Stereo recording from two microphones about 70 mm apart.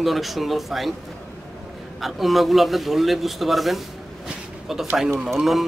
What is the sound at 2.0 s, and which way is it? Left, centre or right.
A man's voice, centre.